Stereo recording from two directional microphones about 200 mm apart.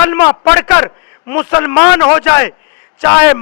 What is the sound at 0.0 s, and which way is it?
A man's voice, 15° left (ahead or behind).